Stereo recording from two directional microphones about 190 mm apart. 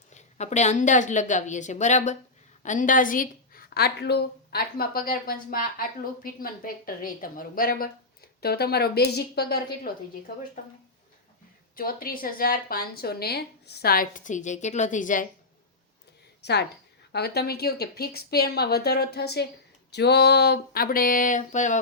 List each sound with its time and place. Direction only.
0.1 s a woman's voice: 35° left (ahead or behind)
11.7 s a woman's voice: 50° left (ahead or behind)
16.4 s a woman's voice: 60° left (ahead or behind); by 21.8 s 40° left (ahead or behind)